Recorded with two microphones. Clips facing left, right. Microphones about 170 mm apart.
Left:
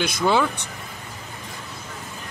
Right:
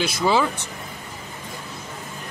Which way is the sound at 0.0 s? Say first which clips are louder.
Even; 5° right (ahead or behind).